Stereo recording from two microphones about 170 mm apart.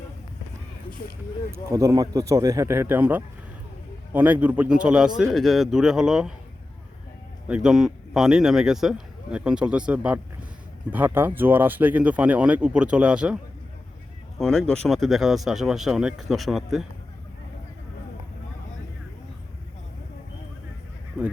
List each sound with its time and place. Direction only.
0.9 s speech: 55° left (ahead or behind)
1.5 s speech: 15° right (ahead or behind)
7.4 s speech: 5° right (ahead or behind)
21.2 s speech: 5° right (ahead or behind)